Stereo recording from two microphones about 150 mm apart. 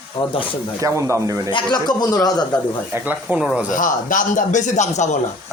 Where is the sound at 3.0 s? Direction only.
10° right (ahead or behind).